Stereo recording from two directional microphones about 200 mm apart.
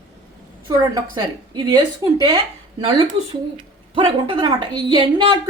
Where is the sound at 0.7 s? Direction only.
20° right (ahead or behind).